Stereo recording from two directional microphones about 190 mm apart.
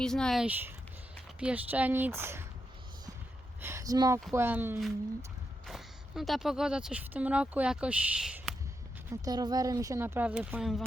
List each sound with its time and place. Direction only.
0.0 s speech: 5° left (ahead or behind); by 2.5 s 15° right (ahead or behind)
3.6 s a sound: 15° right (ahead or behind)
4.4 s speech: 10° right (ahead or behind)
5.6 s speech: centre (ahead or behind)
9.0 s speech: 20° right (ahead or behind); by 10.8 s centre (ahead or behind)